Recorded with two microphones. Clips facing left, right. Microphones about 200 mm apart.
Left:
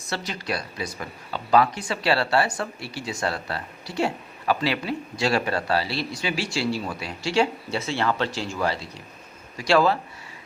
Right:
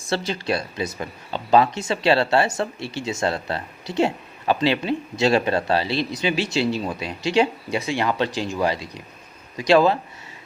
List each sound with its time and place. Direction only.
0.1 s speech: 30° right (ahead or behind)